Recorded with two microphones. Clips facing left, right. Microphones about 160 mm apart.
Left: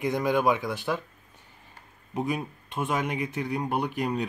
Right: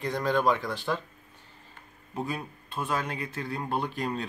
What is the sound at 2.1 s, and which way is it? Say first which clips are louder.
Speech: left 4 dB; 15° left (ahead or behind).